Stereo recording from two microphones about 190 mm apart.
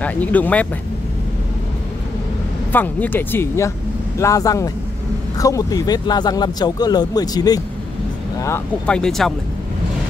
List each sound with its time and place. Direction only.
0.0 s speech: 10° left (ahead or behind)
2.7 s speech: 10° left (ahead or behind)
8.8 s speech: 5° left (ahead or behind)